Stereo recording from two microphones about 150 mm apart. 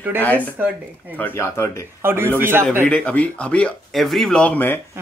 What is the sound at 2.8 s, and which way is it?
Speech, 10° left (ahead or behind).